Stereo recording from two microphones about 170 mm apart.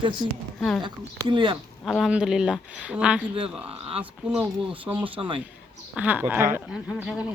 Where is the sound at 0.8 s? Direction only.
30° right (ahead or behind).